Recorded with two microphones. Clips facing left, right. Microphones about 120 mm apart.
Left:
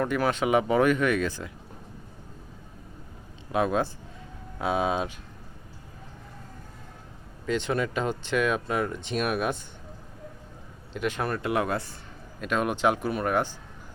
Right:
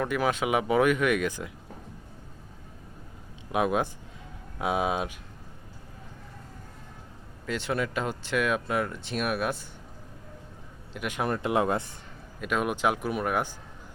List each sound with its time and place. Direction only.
0.0 s speech: 5° right (ahead or behind)
3.5 s speech: 15° right (ahead or behind)
7.4 s speech: 5° right (ahead or behind)
10.9 s speech: 10° right (ahead or behind)
12.4 s speech: 5° right (ahead or behind)